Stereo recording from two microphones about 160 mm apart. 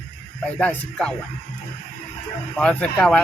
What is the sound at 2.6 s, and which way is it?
Speech, 10° left (ahead or behind).